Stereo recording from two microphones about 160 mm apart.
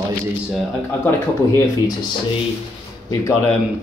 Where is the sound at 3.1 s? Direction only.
20° left (ahead or behind).